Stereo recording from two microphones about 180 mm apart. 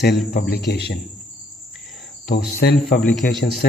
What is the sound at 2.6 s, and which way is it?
Cricket, 60° left (ahead or behind).